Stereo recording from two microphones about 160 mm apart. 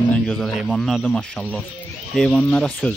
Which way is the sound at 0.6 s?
Centre (ahead or behind).